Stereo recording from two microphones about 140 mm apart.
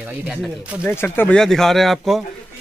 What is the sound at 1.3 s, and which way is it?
Speech, 5° left (ahead or behind).